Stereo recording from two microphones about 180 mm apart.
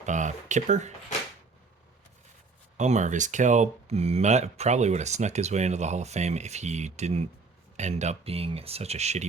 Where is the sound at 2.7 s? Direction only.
40° right (ahead or behind).